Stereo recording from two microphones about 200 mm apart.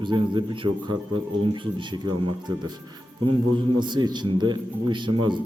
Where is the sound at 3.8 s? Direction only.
20° right (ahead or behind).